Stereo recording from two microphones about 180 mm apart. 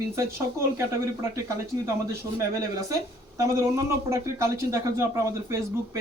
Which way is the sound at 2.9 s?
15° right (ahead or behind).